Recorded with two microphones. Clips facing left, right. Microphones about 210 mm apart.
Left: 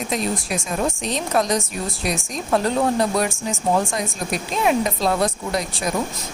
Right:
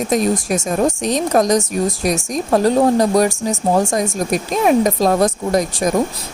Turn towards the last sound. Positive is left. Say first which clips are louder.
# right 7 dB
turn(degrees=-45)  # may be behind; listen again after turning